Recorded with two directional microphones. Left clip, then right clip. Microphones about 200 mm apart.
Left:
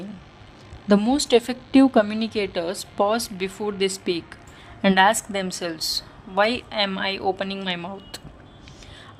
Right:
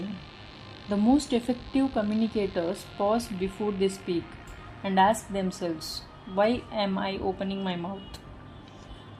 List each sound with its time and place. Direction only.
0.9 s a woman's voice: 55° left (ahead or behind)